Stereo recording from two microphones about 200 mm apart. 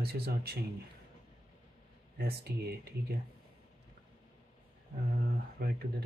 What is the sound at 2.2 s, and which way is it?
Speech, 50° right (ahead or behind).